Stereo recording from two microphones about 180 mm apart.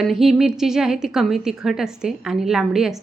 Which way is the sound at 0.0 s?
Centre (ahead or behind).